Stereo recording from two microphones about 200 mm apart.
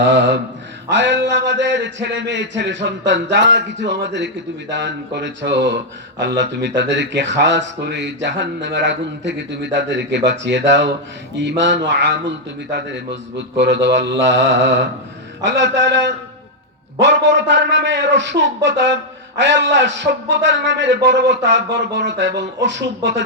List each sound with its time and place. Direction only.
0.0 s speech: 65° right (ahead or behind)